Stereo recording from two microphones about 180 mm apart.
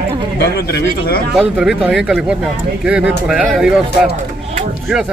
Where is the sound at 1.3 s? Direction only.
Centre (ahead or behind).